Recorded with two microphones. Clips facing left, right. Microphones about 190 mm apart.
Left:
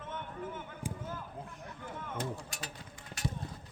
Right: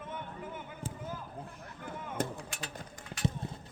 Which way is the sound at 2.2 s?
50° right (ahead or behind).